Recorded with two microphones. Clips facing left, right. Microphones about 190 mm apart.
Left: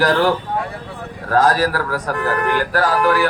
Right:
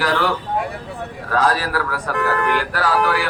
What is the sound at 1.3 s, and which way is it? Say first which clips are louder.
A man's voice: left 4 dB; 45° left (ahead or behind).